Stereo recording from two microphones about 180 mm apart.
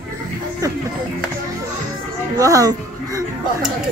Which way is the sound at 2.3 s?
20° right (ahead or behind).